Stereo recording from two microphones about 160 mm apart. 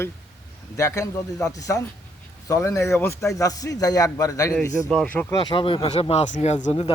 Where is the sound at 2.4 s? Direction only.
20° left (ahead or behind).